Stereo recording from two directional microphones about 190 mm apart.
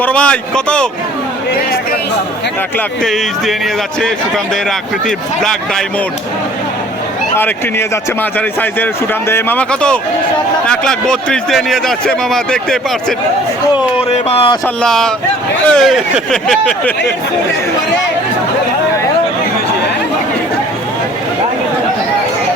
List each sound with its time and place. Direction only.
0.0 s a man's voice: 5° left (ahead or behind)
2.7 s a man's voice: centre (ahead or behind)
5.0 s a man's voice: 5° left (ahead or behind)
7.3 s a man's voice: 10° left (ahead or behind)
14.3 s speech: 30° left (ahead or behind)
14.8 s a man's voice: 5° left (ahead or behind)